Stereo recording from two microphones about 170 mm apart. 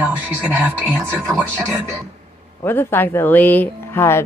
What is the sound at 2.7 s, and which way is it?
A woman's voice, 15° left (ahead or behind).